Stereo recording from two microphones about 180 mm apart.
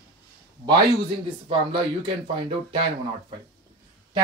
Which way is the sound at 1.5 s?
30° right (ahead or behind).